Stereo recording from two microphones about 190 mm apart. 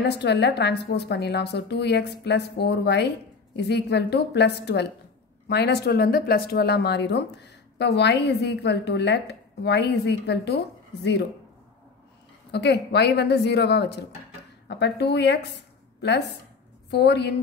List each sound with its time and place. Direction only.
0.1 s a woman's voice: 60° left (ahead or behind)
12.4 s a woman's voice: 60° left (ahead or behind)